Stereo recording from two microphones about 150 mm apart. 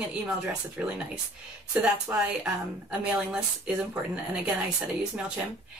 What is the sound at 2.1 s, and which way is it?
Speech, 10° right (ahead or behind).